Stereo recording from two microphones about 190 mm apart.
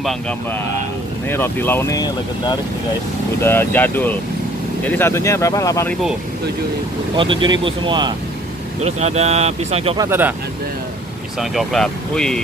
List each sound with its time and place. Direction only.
1.3 s speech: 10° left (ahead or behind)
3.4 s speech: 10° left (ahead or behind)
7.2 s speech: 25° right (ahead or behind)
9.9 s speech: 10° right (ahead or behind)
11.3 s speech: centre (ahead or behind)